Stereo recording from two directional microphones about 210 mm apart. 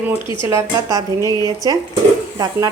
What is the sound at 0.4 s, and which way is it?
A woman's voice, 15° right (ahead or behind).